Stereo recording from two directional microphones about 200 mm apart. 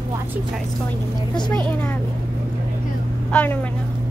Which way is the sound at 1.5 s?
10° left (ahead or behind).